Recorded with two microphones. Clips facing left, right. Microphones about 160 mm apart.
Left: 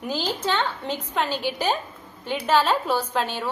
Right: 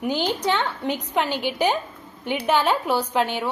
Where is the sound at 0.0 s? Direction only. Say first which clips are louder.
Right 3 dB; 15° right (ahead or behind).